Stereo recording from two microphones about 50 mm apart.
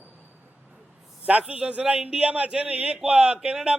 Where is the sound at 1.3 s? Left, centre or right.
Right.